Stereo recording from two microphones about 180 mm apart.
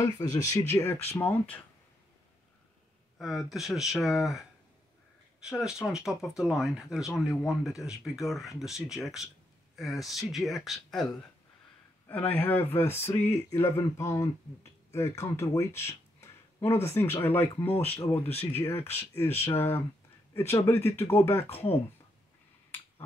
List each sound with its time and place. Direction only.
0.0 s speech: 20° left (ahead or behind)
3.2 s speech: centre (ahead or behind)
5.4 s speech: 5° right (ahead or behind)
12.1 s speech: 10° left (ahead or behind)